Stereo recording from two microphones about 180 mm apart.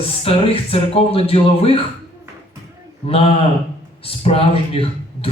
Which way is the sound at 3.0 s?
35° left (ahead or behind).